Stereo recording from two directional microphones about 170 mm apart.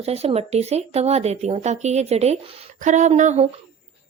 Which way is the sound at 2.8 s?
45° right (ahead or behind).